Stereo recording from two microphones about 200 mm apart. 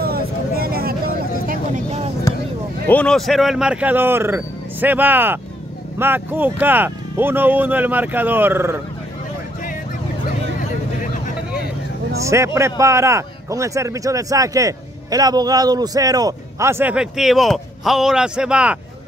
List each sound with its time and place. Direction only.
0.0 s vehicle: 50° right (ahead or behind); by 2.1 s 30° right (ahead or behind)
2.9 s speech: 5° left (ahead or behind); by 8.7 s 10° right (ahead or behind)
12.2 s speech: 15° right (ahead or behind)